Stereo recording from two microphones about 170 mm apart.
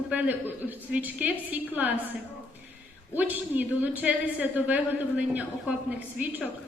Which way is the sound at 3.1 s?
10° right (ahead or behind).